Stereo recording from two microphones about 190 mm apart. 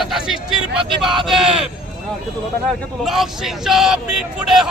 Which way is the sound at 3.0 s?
Centre (ahead or behind).